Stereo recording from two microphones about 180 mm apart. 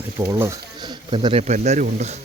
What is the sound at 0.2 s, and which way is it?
Speech, 15° right (ahead or behind).